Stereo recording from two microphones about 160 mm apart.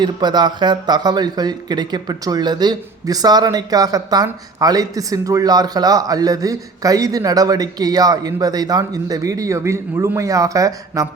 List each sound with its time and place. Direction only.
0.0 s speech: 25° right (ahead or behind)